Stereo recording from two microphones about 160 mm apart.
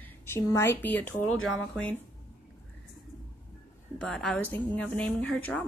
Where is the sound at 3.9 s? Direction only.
5° left (ahead or behind).